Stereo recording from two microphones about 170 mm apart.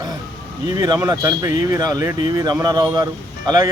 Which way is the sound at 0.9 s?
20° right (ahead or behind).